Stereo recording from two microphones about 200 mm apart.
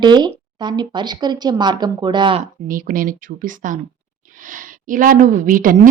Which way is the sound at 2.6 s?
45° right (ahead or behind).